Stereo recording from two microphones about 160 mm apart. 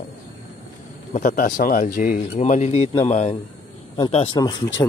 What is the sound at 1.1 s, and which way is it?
Speech, 55° left (ahead or behind).